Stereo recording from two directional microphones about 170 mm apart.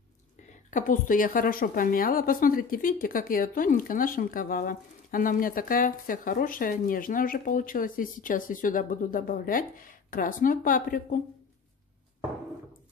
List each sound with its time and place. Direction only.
0.7 s a woman's voice: 50° left (ahead or behind)